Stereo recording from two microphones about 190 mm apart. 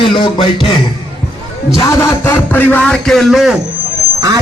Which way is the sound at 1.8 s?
15° left (ahead or behind).